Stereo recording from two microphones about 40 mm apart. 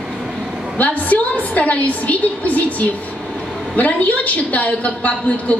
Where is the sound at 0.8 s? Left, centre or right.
Left.